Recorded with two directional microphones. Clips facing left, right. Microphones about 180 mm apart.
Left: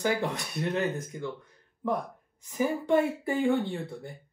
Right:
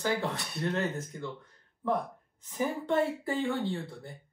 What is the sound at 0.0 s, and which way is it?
Speech, 15° left (ahead or behind).